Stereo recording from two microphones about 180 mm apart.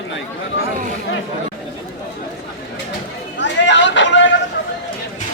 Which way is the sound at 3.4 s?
85° left.